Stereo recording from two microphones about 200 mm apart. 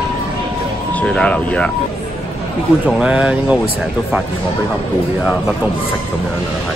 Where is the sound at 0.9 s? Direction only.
5° left (ahead or behind).